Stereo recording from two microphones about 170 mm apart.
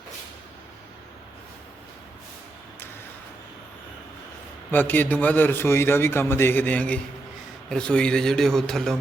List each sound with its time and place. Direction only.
4.7 s a man's voice: 10° left (ahead or behind)